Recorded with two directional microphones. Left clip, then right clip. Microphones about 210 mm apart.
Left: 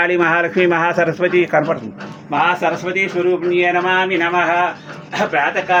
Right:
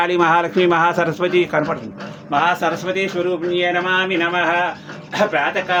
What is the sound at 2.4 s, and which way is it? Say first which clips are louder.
Speech: left 2 dB; 20° right (ahead or behind).